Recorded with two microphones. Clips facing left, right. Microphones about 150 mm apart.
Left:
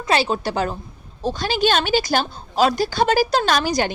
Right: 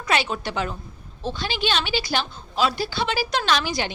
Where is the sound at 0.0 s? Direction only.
35° left (ahead or behind).